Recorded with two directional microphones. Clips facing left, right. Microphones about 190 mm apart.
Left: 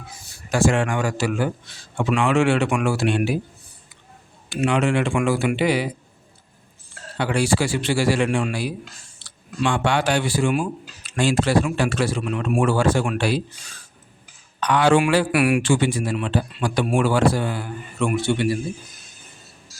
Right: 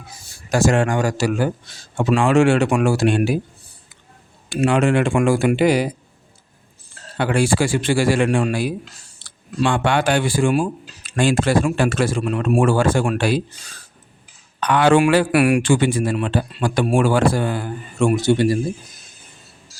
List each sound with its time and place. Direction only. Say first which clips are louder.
0.5 s a man's voice: right 3 dB; 40° right (ahead or behind)
4.4 s a man's voice: right 3 dB; 45° right (ahead or behind)
7.2 s a man's voice: right 3 dB; 50° right (ahead or behind)
9.2 s a sound: even; 45° right (ahead or behind)
9.6 s a man's voice: right 2 dB; 55° right (ahead or behind)
14.6 s a man's voice: right 3 dB; 55° right (ahead or behind); by 18.6 s 40° right (ahead or behind)